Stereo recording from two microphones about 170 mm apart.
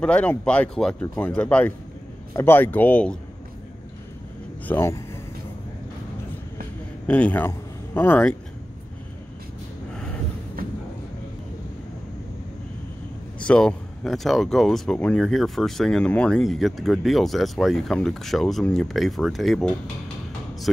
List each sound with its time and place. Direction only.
0.0 s speech: 10° left (ahead or behind)
4.6 s speech: 15° left (ahead or behind)
7.1 s speech: 10° left (ahead or behind)
10.6 s a sound: 55° right (ahead or behind)
13.4 s speech: 5° left (ahead or behind)